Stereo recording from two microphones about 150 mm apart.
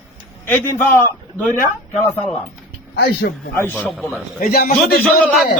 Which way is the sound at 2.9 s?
90° left.